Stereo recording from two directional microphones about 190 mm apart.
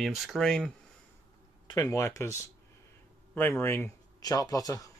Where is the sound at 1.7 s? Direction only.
15° left (ahead or behind).